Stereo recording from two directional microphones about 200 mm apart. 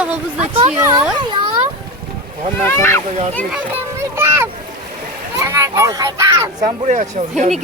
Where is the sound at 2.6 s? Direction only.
15° left (ahead or behind).